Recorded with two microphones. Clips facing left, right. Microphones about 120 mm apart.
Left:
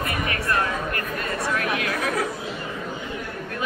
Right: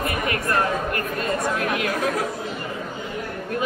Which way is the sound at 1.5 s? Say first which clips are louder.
Right 2 dB; 25° right (ahead or behind).